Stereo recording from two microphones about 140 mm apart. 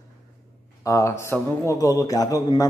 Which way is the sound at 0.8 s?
20° left (ahead or behind).